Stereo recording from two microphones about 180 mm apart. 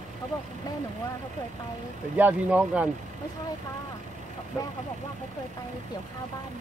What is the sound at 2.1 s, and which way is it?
Speech, 10° right (ahead or behind).